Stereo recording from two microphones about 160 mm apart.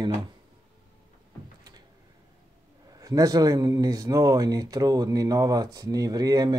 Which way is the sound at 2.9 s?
25° right (ahead or behind).